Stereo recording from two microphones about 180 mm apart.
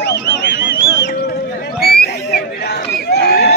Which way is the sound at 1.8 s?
60° left (ahead or behind).